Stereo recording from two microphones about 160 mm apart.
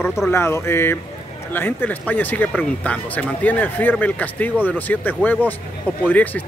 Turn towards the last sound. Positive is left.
turn(degrees=10)  # may be behind; listen again after turning